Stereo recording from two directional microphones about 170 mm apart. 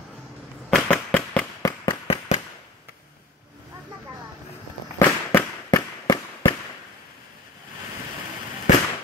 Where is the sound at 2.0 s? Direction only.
35° left (ahead or behind).